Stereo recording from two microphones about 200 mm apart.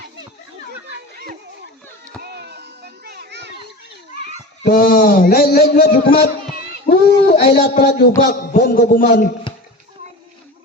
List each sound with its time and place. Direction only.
2.2 s children playing: 55° right (ahead or behind)
4.6 s a man's voice: 45° left (ahead or behind)
6.8 s child singing: 50° left (ahead or behind)
7.4 s a man's voice: 50° left (ahead or behind)